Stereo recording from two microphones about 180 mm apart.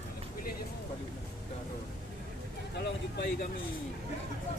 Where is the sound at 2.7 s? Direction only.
70° left (ahead or behind).